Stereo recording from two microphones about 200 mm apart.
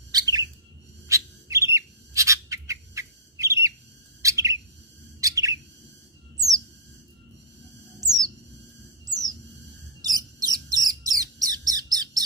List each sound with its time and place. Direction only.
0.1 s bird: 20° right (ahead or behind)
8.0 s bird: 20° right (ahead or behind)
10.0 s bird: 20° right (ahead or behind)